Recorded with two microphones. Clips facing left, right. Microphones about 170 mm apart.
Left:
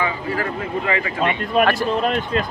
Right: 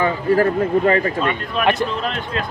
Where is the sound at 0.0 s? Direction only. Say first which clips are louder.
Right 7 dB; 45° right (ahead or behind).